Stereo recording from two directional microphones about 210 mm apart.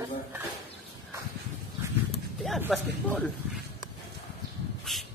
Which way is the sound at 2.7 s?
Centre (ahead or behind).